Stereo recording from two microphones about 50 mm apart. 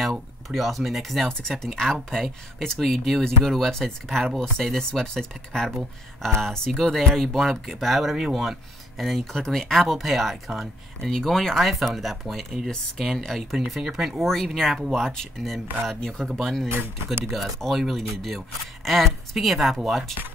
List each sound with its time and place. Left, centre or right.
0.5 s speech: centre
13.7 s speech: centre
14.2 s speech: centre
16.6 s speech: right
17.3 s speech: centre